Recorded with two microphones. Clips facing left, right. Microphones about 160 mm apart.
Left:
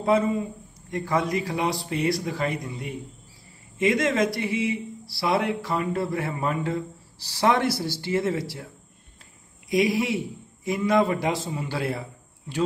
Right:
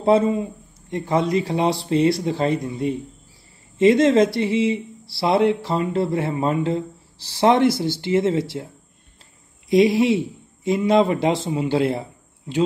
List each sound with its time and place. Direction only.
0.0 s speech: 25° right (ahead or behind)
9.7 s a man's voice: 25° right (ahead or behind)